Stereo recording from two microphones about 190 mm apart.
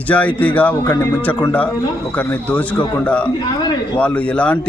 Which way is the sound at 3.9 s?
5° left (ahead or behind).